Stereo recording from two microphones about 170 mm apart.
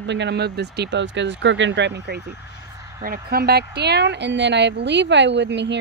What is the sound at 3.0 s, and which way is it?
Speech, 60° right (ahead or behind).